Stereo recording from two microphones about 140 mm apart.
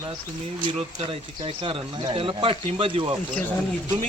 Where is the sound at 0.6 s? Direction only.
40° right (ahead or behind).